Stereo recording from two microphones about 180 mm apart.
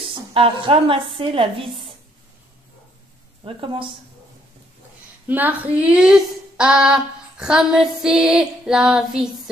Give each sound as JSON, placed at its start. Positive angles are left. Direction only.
{"t": 0.1, "sound": "a woman's voice", "side_deg": -30}
{"t": 3.4, "sound": "a woman's voice", "side_deg": -30}
{"t": 5.2, "sound": "speech", "side_deg": -10}